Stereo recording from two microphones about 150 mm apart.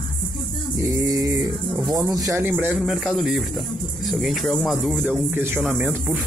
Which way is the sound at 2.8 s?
Centre (ahead or behind).